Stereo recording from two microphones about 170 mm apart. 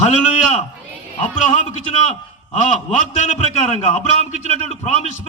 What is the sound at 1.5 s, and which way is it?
Speech, 40° left (ahead or behind).